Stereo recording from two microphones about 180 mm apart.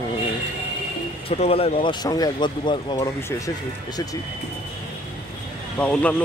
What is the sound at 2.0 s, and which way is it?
Speech, 20° left (ahead or behind).